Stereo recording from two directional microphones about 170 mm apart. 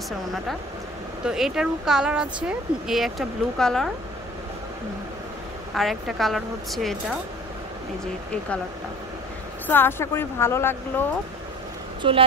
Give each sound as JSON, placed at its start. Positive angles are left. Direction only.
{"t": 1.2, "sound": "speech", "side_deg": -5}
{"t": 5.8, "sound": "speech", "side_deg": 0}
{"t": 9.7, "sound": "speech", "side_deg": 15}
{"t": 12.0, "sound": "speech", "side_deg": -30}